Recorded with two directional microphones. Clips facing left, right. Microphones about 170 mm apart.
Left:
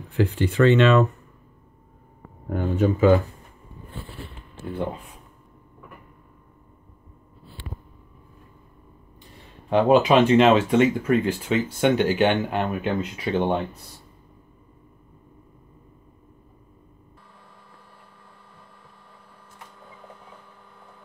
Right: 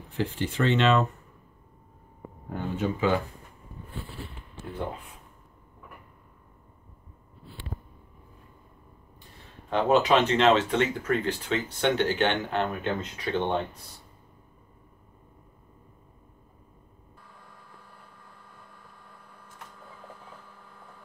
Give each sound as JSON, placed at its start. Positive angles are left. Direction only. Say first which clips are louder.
{"t": 0.6, "sound": "speech", "louder": "left 6 dB", "side_deg": 55}
{"t": 2.5, "sound": "speech", "louder": "left 7 dB", "side_deg": 45}
{"t": 9.7, "sound": "speech", "louder": "left 5 dB", "side_deg": 10}
{"t": 19.6, "sound": "printer", "louder": "left 1 dB", "side_deg": 0}